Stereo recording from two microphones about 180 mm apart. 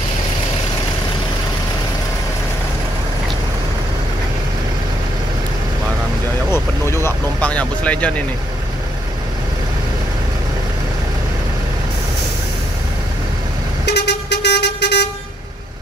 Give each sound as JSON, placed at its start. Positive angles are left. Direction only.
{"t": 6.5, "sound": "vehicle", "side_deg": 15}
{"t": 13.8, "sound": "vehicle", "side_deg": 70}